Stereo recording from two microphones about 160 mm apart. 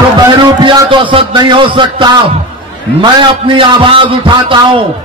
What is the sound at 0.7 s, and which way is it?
A man's voice, 30° right (ahead or behind).